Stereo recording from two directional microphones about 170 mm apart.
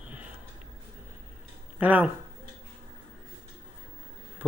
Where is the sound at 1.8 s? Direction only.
10° right (ahead or behind).